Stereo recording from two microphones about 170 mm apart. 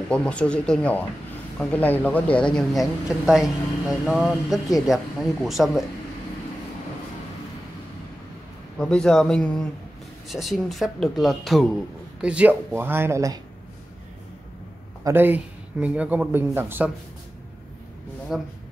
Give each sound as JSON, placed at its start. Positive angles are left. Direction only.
{"t": 0.1, "sound": "a man's voice", "side_deg": 5}
{"t": 8.7, "sound": "a man's voice", "side_deg": 5}
{"t": 15.0, "sound": "a man's voice", "side_deg": -10}
{"t": 18.3, "sound": "a man's voice", "side_deg": 0}